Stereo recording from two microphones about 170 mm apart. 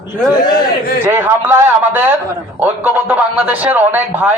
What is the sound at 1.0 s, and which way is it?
A man's voice, 15° right (ahead or behind).